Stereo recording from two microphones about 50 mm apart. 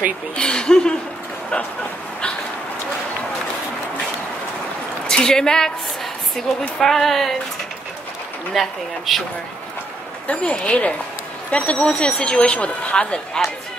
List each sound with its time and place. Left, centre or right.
0.4 s speech: centre
5.0 s a woman's voice: centre
6.8 s speech: centre
8.5 s speech: centre
10.2 s speech: centre